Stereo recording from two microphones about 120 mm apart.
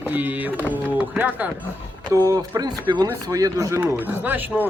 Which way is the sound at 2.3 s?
30° right (ahead or behind).